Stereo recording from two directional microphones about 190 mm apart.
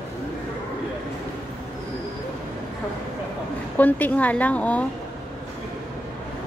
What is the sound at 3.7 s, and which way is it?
A woman's voice, 10° left (ahead or behind).